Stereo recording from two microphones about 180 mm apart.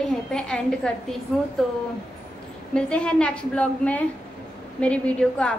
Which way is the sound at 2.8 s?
5° left (ahead or behind).